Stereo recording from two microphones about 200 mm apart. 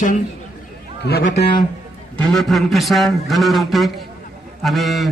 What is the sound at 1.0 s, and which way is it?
Speech, 55° left (ahead or behind).